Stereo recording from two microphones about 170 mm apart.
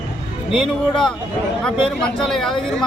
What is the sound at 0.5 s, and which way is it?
Speech, centre (ahead or behind).